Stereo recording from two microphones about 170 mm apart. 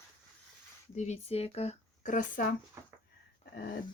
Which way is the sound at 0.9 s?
40° left (ahead or behind).